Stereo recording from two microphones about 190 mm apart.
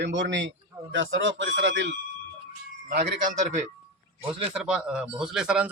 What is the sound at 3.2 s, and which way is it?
Speech, 40° right (ahead or behind).